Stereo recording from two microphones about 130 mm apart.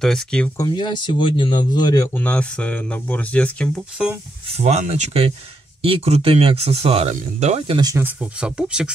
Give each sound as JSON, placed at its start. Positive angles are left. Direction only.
{"t": 0.0, "sound": "speech", "side_deg": 5}
{"t": 0.6, "sound": "speech", "side_deg": 35}
{"t": 2.1, "sound": "speech", "side_deg": 10}
{"t": 4.6, "sound": "speech", "side_deg": -60}
{"t": 7.6, "sound": "speech", "side_deg": -40}
{"t": 7.9, "sound": "speech", "side_deg": -15}